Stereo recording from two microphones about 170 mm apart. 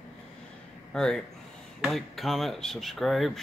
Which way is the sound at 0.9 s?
5° left (ahead or behind).